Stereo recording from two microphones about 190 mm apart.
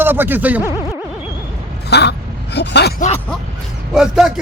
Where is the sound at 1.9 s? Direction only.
60° left (ahead or behind).